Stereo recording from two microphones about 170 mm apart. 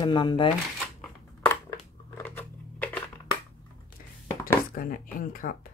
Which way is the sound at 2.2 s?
10° left (ahead or behind).